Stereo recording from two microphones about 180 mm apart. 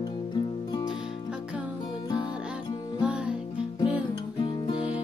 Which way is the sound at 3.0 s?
5° right (ahead or behind).